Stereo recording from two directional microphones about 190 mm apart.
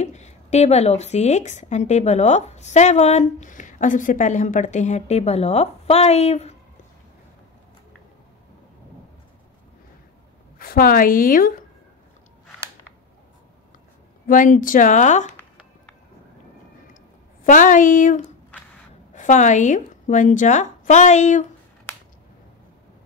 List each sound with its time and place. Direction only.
0.0 s speech: 35° left (ahead or behind)
10.6 s speech: 50° left (ahead or behind)
14.2 s speech: 45° left (ahead or behind)
17.4 s speech: 45° left (ahead or behind)